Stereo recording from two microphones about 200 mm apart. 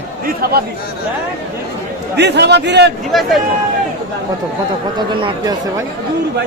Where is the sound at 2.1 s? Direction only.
55° right (ahead or behind).